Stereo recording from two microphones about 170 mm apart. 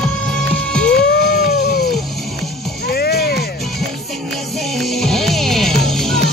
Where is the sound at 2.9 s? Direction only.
65° left (ahead or behind).